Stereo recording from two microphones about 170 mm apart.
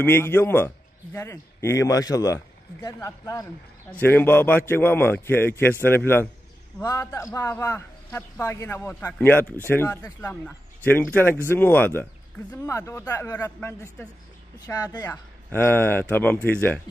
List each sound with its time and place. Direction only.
0.0 s speech: 10° left (ahead or behind)